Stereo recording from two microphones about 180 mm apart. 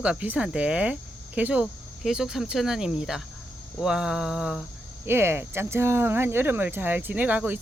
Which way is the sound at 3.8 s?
5° right (ahead or behind).